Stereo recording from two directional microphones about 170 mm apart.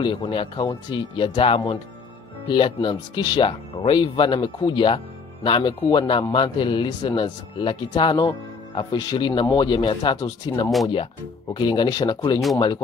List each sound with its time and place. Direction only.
0.0 s a man's voice: 30° left (ahead or behind)